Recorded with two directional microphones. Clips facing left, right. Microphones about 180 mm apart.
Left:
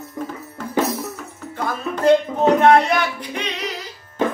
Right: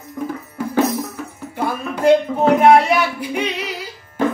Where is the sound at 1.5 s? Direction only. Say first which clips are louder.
Right 2 dB; 10° right (ahead or behind).